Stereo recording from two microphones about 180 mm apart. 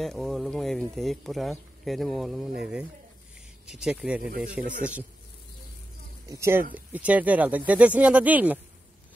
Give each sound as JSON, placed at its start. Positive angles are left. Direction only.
{"t": 0.0, "sound": "speech", "side_deg": 0}
{"t": 6.2, "sound": "speech", "side_deg": -15}